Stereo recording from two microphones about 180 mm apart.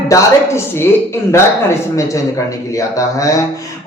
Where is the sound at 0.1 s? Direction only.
15° left (ahead or behind).